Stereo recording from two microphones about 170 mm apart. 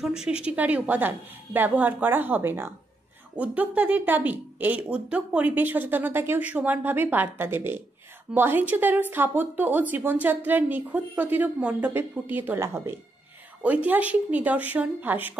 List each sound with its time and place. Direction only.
0.0 s speech: 5° right (ahead or behind)